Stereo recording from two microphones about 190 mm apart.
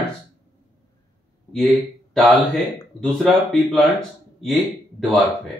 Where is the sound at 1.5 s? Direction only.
5° left (ahead or behind).